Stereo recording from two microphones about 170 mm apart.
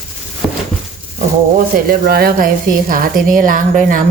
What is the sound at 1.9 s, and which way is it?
A woman's voice, 60° right (ahead or behind).